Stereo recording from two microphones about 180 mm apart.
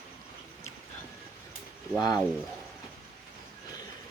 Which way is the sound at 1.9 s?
20° left (ahead or behind).